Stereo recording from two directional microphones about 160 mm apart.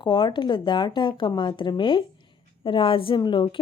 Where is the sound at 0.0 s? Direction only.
30° left (ahead or behind).